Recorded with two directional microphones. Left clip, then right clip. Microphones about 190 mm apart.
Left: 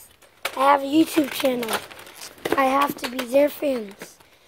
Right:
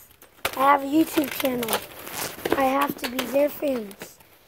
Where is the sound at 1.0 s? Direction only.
15° right (ahead or behind).